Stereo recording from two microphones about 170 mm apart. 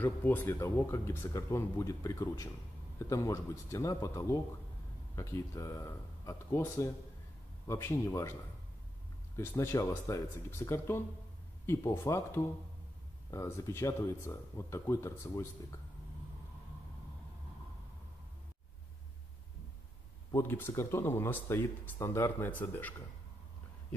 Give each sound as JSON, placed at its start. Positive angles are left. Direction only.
{"t": 0.0, "sound": "speech", "side_deg": 10}
{"t": 9.4, "sound": "speech", "side_deg": 15}
{"t": 20.2, "sound": "speech", "side_deg": 15}